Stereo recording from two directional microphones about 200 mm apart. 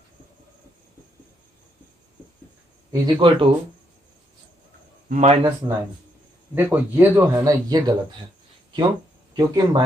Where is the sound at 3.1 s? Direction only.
25° right (ahead or behind).